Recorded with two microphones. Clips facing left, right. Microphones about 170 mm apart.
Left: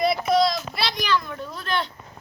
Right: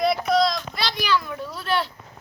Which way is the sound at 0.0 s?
Centre (ahead or behind).